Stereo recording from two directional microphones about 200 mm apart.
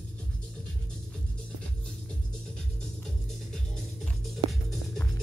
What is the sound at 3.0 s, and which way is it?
Music, 5° left (ahead or behind).